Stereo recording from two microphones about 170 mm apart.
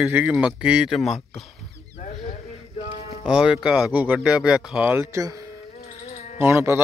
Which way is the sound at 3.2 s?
5° right (ahead or behind).